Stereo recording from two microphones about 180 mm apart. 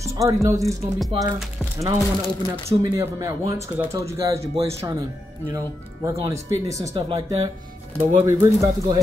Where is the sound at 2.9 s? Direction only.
15° right (ahead or behind).